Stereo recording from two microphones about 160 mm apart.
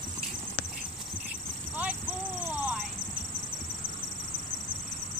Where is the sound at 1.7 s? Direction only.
10° right (ahead or behind).